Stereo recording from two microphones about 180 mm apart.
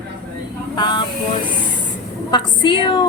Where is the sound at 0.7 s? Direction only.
25° left (ahead or behind).